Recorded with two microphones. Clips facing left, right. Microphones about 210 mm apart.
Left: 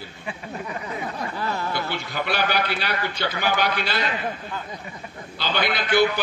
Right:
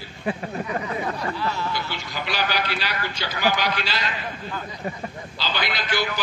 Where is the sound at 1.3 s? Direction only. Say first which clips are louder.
Even; 50° left (ahead or behind).